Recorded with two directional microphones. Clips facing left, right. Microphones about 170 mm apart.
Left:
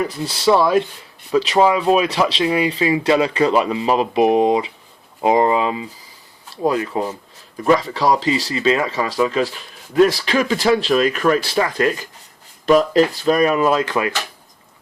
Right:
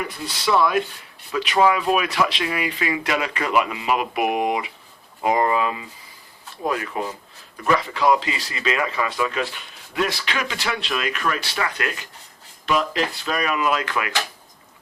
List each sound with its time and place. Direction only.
0.0 s speech: 30° left (ahead or behind)